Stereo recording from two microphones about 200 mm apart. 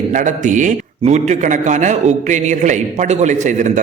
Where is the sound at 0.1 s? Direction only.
40° right (ahead or behind).